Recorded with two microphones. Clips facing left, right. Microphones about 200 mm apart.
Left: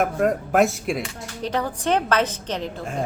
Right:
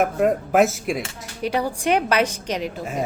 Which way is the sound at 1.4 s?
10° right (ahead or behind).